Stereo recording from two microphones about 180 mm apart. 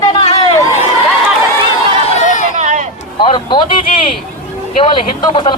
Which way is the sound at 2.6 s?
45° right (ahead or behind).